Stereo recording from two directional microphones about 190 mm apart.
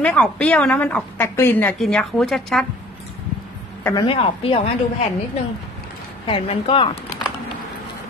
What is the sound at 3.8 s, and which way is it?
Speech, 25° left (ahead or behind).